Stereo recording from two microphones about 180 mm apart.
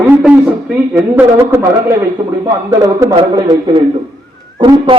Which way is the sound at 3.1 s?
25° right (ahead or behind).